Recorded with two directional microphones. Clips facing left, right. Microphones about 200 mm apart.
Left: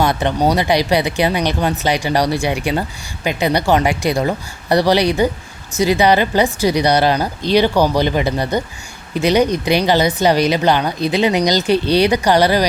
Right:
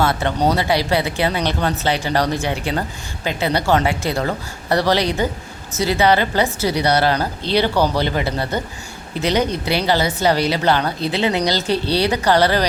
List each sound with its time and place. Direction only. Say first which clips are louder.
0.0 s speech: left 2 dB; 15° left (ahead or behind)